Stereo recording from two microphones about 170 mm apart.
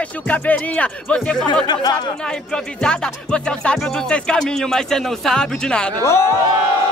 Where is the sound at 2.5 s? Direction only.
5° left (ahead or behind).